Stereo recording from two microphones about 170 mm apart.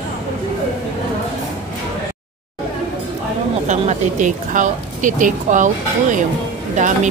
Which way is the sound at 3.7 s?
45° right (ahead or behind).